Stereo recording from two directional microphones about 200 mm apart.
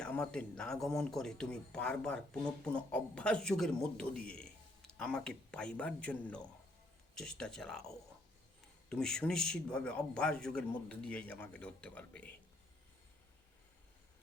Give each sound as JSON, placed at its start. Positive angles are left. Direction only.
{"t": 0.0, "sound": "speech", "side_deg": 5}